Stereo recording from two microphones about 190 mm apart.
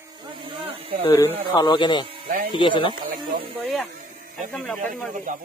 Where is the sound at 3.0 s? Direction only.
50° right (ahead or behind).